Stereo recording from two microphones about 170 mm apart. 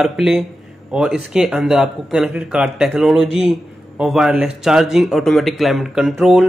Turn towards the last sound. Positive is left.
turn(degrees=0)  # may be behind; listen again after turning